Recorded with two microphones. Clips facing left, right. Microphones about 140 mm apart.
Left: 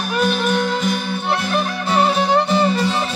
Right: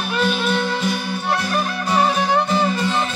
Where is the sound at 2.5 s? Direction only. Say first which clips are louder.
Left 2 dB; 30° left (ahead or behind).